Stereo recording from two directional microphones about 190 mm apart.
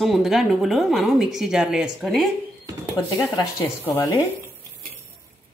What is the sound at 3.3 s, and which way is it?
Speech, 15° left (ahead or behind).